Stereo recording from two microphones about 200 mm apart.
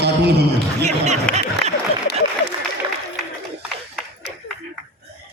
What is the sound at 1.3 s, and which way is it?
Speech, 5° left (ahead or behind).